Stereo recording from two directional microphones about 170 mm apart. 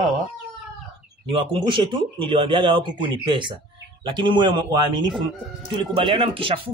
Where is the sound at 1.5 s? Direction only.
30° right (ahead or behind).